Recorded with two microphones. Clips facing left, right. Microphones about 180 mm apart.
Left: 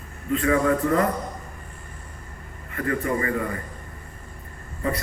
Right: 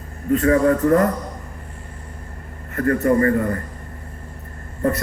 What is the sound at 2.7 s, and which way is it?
Speech, 45° right (ahead or behind).